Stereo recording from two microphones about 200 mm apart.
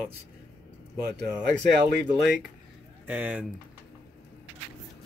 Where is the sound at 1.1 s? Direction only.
60° right (ahead or behind).